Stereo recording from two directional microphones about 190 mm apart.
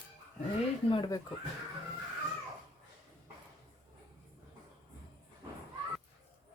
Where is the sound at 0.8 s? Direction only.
25° left (ahead or behind).